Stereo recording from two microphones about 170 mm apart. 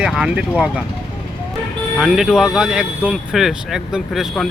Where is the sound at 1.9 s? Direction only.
Centre (ahead or behind).